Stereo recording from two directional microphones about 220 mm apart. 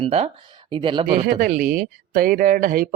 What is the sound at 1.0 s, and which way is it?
Speech, 40° right (ahead or behind).